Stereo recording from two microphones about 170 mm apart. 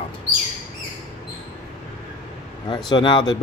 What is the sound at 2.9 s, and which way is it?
Speech, 25° left (ahead or behind).